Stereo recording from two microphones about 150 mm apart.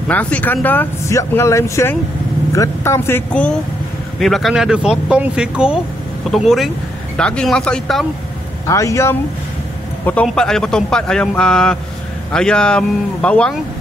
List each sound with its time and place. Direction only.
0.1 s speech: 10° left (ahead or behind)
4.2 s speech: centre (ahead or behind)
8.6 s a man's voice: 20° left (ahead or behind)
10.2 s speech: 5° left (ahead or behind)